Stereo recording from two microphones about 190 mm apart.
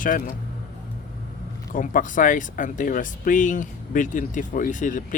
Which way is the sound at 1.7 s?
45° left (ahead or behind).